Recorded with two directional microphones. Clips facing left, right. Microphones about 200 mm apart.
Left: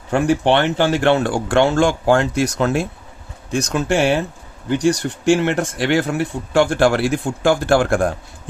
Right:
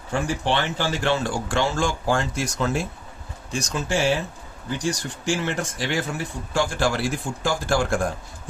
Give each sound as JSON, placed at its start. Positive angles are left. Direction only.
{"t": 0.1, "sound": "speech", "side_deg": 65}